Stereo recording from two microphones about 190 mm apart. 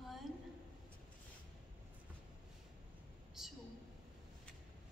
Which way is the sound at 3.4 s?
Centre (ahead or behind).